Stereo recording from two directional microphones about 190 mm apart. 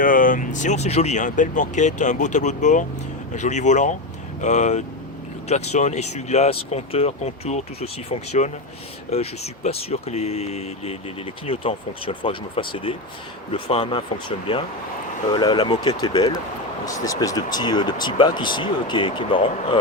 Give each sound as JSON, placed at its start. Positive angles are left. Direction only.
{"t": 0.0, "sound": "speech", "side_deg": 45}